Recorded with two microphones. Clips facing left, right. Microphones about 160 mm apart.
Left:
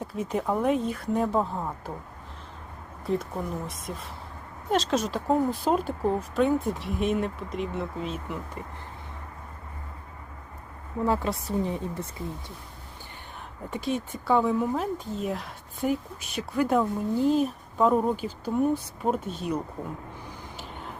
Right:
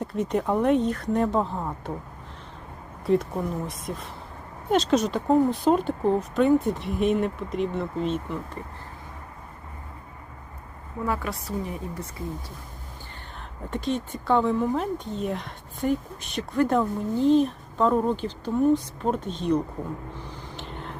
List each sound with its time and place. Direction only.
0.0 s speech: 5° left (ahead or behind)
3.1 s speech: centre (ahead or behind)
11.0 s speech: 25° left (ahead or behind)
13.7 s speech: 10° left (ahead or behind)
20.6 s a sound: 5° left (ahead or behind)